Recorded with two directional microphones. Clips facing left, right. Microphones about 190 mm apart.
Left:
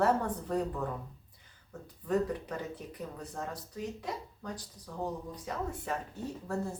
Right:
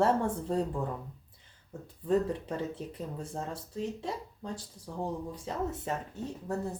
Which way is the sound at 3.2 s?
25° right (ahead or behind).